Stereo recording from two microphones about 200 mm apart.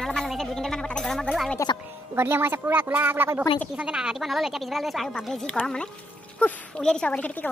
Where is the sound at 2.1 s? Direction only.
10° right (ahead or behind); by 7.5 s 10° left (ahead or behind).